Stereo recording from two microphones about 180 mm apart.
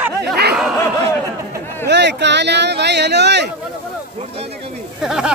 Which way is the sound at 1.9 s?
75° right (ahead or behind).